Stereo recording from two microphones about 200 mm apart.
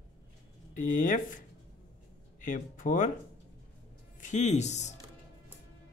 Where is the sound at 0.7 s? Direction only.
40° left (ahead or behind).